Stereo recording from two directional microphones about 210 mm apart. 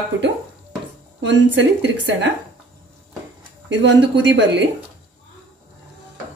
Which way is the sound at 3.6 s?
55° right (ahead or behind).